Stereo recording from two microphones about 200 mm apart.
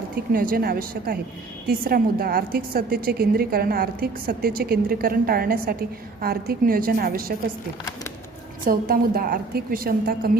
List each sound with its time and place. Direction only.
0.3 s a woman's voice: 45° right (ahead or behind)
8.6 s a woman's voice: 45° right (ahead or behind)